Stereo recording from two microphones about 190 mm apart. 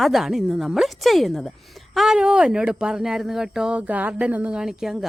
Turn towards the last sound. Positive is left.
turn(degrees=0)  # may be behind; listen again after turning